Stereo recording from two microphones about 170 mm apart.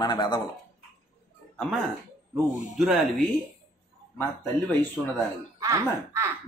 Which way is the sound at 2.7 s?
Centre (ahead or behind).